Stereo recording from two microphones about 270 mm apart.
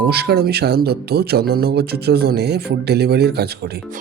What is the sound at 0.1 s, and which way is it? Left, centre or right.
Speech, right.